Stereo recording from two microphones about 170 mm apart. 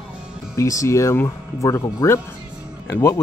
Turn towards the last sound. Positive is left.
turn(degrees=15)  # may be behind; listen again after turning